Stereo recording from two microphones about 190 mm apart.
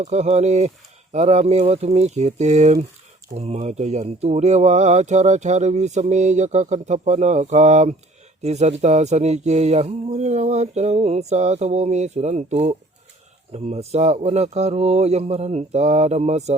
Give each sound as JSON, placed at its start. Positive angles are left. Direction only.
{"t": 0.0, "sound": "speech", "side_deg": -35}